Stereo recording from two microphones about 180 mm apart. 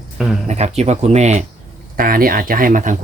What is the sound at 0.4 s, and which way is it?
Speech, 40° right (ahead or behind).